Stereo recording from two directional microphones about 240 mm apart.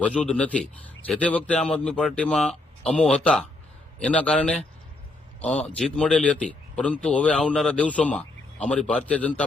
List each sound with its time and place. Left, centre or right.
0.0 s speech: centre